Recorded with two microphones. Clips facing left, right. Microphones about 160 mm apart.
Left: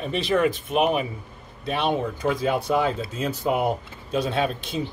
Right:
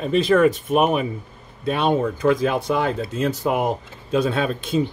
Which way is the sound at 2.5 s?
90° right.